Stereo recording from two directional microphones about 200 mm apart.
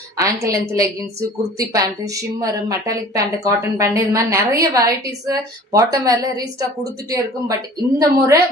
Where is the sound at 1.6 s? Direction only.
15° right (ahead or behind).